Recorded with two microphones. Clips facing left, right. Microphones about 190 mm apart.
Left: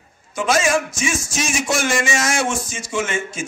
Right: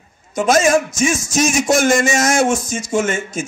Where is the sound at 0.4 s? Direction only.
45° right (ahead or behind).